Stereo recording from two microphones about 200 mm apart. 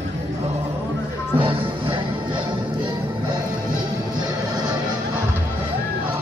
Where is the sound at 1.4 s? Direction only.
25° right (ahead or behind).